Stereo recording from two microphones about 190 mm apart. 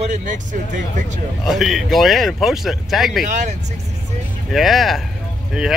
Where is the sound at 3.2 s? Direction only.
40° right (ahead or behind).